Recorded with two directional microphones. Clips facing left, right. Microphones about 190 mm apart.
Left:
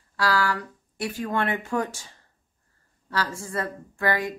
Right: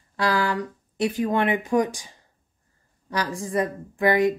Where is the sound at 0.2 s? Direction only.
20° right (ahead or behind).